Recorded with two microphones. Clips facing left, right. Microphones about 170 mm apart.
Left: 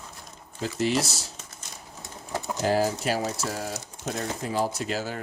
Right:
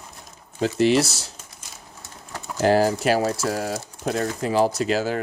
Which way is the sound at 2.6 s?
75° right (ahead or behind).